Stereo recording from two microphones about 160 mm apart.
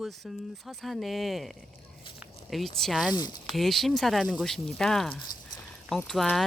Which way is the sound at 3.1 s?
25° left (ahead or behind).